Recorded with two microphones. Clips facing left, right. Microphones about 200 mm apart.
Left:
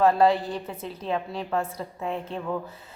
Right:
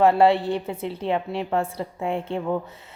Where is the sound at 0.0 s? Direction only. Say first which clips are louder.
Right 3 dB; 25° right (ahead or behind).